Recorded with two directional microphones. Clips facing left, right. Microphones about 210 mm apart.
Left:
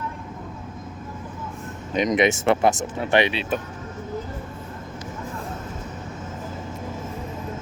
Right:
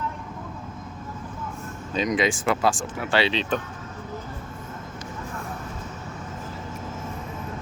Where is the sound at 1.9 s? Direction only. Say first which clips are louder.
Left 4 dB; 20° left (ahead or behind).